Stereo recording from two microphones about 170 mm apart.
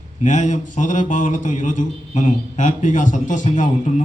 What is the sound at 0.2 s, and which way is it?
Speech, 45° left (ahead or behind).